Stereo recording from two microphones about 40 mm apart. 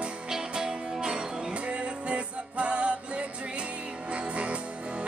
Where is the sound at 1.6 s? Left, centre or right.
Right.